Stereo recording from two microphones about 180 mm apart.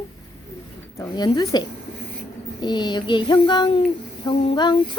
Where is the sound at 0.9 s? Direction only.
25° left (ahead or behind).